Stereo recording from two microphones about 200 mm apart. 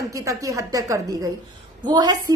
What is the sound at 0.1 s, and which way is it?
A woman's voice, 15° right (ahead or behind).